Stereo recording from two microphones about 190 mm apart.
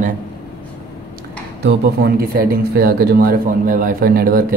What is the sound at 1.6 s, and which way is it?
Speech, 55° right (ahead or behind).